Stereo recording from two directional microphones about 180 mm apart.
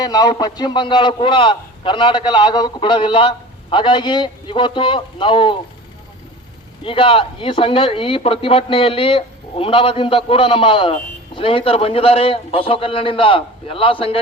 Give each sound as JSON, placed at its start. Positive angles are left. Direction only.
{"t": 0.0, "sound": "a man's voice", "side_deg": 20}
{"t": 6.8, "sound": "a man's voice", "side_deg": 30}